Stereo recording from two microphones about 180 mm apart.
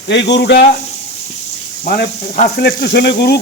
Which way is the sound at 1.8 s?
50° left (ahead or behind).